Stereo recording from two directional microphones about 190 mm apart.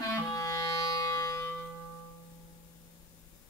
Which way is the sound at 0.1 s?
15° left (ahead or behind).